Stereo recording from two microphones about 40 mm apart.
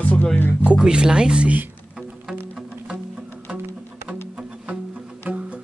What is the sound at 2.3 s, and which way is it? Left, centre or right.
Music, right.